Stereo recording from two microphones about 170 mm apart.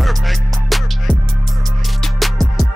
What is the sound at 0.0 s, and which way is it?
Music, centre (ahead or behind).